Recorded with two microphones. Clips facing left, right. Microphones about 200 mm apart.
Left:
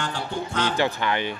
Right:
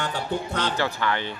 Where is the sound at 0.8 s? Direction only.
20° left (ahead or behind).